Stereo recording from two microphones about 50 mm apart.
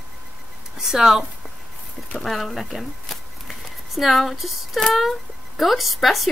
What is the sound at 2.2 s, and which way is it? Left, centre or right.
A woman's voice, centre.